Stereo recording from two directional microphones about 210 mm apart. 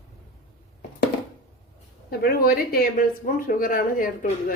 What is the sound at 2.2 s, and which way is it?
Speech, 45° left (ahead or behind).